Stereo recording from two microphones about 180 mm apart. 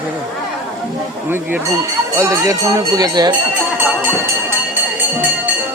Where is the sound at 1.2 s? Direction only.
10° right (ahead or behind).